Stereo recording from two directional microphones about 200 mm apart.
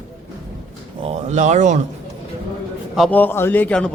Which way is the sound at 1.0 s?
35° right (ahead or behind).